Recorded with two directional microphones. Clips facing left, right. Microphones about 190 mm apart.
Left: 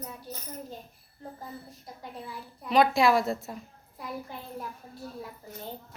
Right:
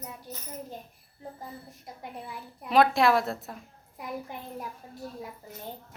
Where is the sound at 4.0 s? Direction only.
20° right (ahead or behind).